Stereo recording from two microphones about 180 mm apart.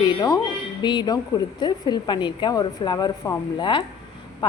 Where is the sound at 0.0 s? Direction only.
20° left (ahead or behind).